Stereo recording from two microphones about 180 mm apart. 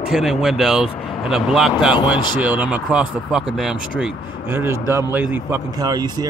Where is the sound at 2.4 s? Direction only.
10° right (ahead or behind).